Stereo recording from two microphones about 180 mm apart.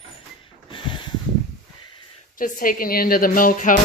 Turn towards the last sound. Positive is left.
turn(degrees=50)  # may be behind; listen again after turning